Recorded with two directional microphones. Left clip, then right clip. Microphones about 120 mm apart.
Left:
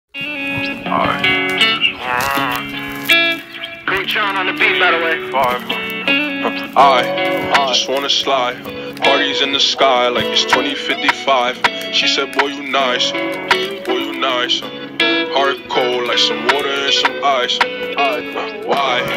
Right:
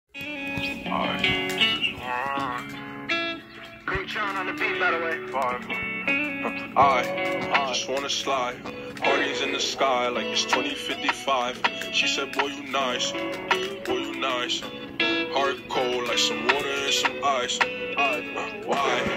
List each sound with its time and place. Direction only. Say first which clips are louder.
0.5 s music: left 9 dB; 40° left (ahead or behind)
3.1 s music: left 15 dB; 25° left (ahead or behind)
3.8 s speech: left 11 dB; 25° left (ahead or behind)
9.0 s music: left 10 dB; 30° left (ahead or behind)
18.7 s speech: left 8 dB; 25° left (ahead or behind)